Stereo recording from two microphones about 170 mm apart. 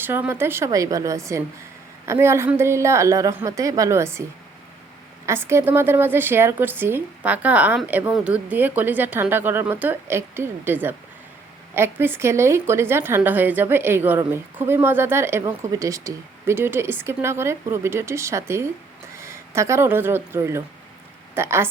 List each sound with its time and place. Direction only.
0.0 s speech: 10° right (ahead or behind)
5.2 s speech: 15° right (ahead or behind)